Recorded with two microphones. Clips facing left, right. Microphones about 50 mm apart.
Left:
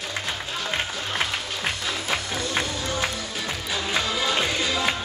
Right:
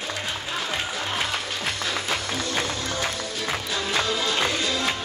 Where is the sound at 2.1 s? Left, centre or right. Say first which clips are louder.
Even; centre.